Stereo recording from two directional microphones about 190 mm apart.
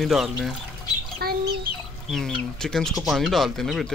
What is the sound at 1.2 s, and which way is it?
Chicken, 55° right (ahead or behind).